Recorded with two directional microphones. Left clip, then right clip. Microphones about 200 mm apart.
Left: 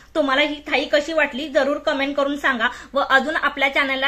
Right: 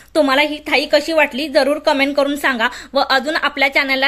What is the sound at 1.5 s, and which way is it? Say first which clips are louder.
Speech: right 5 dB; 35° right (ahead or behind).